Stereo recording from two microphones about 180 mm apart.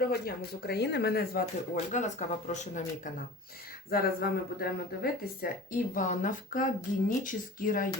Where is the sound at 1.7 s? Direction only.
40° left (ahead or behind).